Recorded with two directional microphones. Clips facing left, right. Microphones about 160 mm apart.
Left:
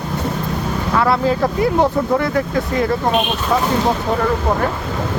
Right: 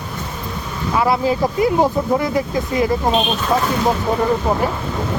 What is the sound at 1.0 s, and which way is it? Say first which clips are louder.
Speech: even; 15° right (ahead or behind).